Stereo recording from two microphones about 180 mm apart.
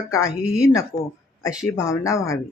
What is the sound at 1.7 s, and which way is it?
Speech, 15° left (ahead or behind).